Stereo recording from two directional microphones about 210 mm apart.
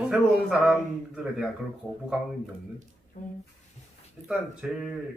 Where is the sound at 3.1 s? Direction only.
40° left (ahead or behind).